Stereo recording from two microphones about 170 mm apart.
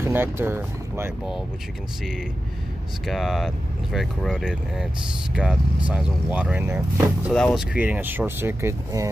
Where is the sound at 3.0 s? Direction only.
Centre (ahead or behind).